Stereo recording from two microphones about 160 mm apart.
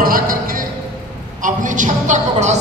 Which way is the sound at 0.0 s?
60° right (ahead or behind).